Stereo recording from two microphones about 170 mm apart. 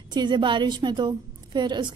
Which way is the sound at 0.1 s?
25° right (ahead or behind).